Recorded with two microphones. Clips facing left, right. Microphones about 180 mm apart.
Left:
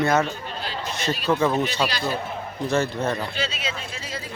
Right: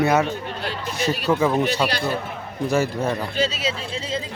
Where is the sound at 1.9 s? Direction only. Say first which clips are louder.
Right 3 dB; 60° right (ahead or behind).